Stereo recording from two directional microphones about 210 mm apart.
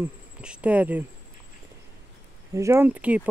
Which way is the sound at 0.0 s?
5° right (ahead or behind).